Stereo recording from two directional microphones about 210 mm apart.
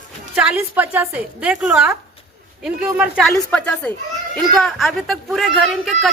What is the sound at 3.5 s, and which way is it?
A child's voice, 5° left (ahead or behind).